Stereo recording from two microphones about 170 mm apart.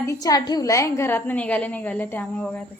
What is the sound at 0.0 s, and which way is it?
A woman's voice, 20° left (ahead or behind).